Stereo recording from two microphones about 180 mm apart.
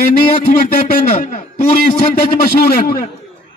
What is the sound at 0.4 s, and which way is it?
Speech, 55° left (ahead or behind).